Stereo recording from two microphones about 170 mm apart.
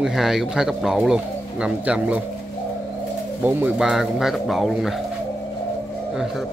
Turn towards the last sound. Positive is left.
turn(degrees=0)  # may be behind; listen again after turning